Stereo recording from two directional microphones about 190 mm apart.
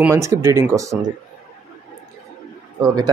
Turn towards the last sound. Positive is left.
turn(degrees=-20)  # may be behind; listen again after turning